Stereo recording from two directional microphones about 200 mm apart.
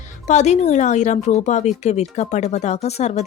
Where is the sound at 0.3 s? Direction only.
35° left (ahead or behind).